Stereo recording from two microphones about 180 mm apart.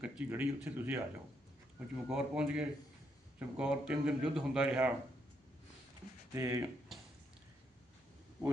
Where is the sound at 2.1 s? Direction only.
5° right (ahead or behind).